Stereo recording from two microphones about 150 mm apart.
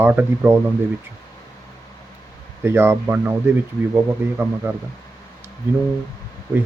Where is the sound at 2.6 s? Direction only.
15° right (ahead or behind).